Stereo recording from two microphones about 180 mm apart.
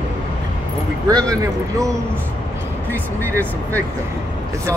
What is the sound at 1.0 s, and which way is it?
Speech, 20° right (ahead or behind).